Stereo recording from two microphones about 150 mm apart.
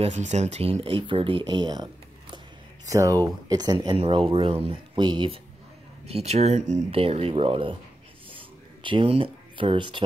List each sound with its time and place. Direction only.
0.0 s speech: 50° right (ahead or behind); by 1.9 s 30° right (ahead or behind)
2.9 s speech: 20° right (ahead or behind)
6.0 s speech: 45° right (ahead or behind)
8.8 s speech: 35° right (ahead or behind)